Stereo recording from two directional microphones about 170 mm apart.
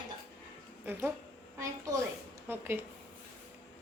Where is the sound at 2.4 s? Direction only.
10° right (ahead or behind).